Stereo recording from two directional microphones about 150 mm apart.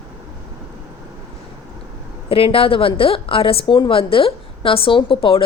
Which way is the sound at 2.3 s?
40° left (ahead or behind).